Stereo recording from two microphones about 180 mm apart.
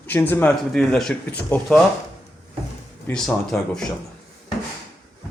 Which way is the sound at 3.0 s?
5° left (ahead or behind).